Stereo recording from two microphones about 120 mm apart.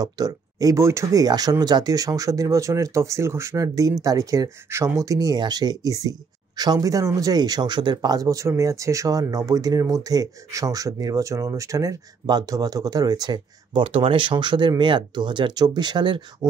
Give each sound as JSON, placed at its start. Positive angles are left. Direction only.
{"t": 0.0, "sound": "speech", "side_deg": -30}